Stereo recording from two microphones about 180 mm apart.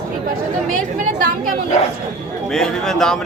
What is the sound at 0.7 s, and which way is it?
Speech, 45° right (ahead or behind).